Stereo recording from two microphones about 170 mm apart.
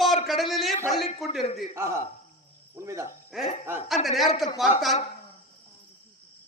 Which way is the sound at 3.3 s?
Centre (ahead or behind).